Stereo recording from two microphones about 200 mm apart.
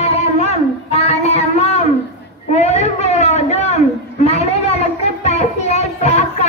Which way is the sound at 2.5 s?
35° left (ahead or behind).